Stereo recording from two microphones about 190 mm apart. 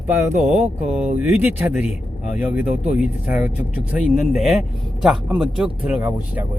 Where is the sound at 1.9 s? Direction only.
40° left (ahead or behind).